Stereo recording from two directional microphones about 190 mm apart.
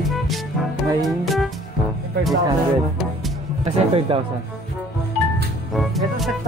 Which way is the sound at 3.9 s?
30° right (ahead or behind).